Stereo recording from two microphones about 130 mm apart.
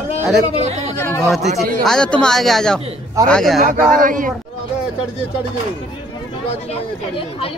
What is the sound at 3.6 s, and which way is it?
Speech, 90° right.